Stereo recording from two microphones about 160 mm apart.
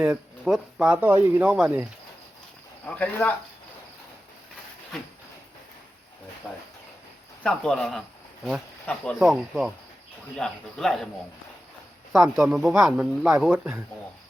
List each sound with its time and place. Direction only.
0.0 s speech: 5° right (ahead or behind)
2.8 s speech: 10° left (ahead or behind)
4.9 s speech: centre (ahead or behind)
7.4 s speech: 5° left (ahead or behind)
12.4 s speech: centre (ahead or behind)